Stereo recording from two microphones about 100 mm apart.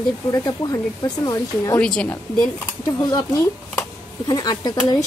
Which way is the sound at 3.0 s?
45° left (ahead or behind).